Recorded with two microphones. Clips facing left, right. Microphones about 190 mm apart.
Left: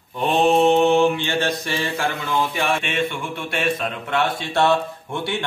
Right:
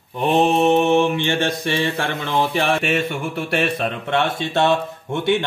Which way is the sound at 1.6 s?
25° right (ahead or behind).